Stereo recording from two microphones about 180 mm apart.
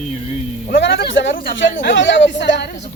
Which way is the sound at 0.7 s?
80° left.